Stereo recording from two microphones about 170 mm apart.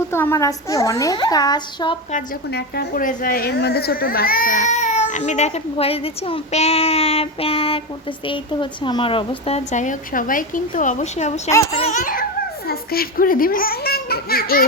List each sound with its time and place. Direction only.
0.1 s a child's voice: 15° left (ahead or behind)
2.5 s speech: 70° left (ahead or behind); by 7.8 s 35° left (ahead or behind)
8.8 s speech: 30° left (ahead or behind)
9.7 s speech: 50° left (ahead or behind)
12.6 s a child's voice: 60° left (ahead or behind)